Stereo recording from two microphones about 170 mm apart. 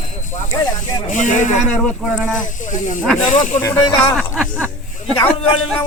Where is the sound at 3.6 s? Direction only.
20° left (ahead or behind).